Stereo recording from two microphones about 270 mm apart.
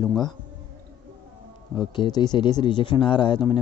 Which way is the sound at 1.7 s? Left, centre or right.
Centre.